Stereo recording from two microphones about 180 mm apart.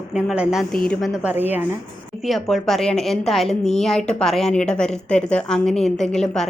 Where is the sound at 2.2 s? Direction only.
Centre (ahead or behind).